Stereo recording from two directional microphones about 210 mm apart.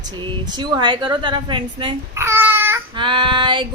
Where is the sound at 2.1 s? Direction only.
10° right (ahead or behind).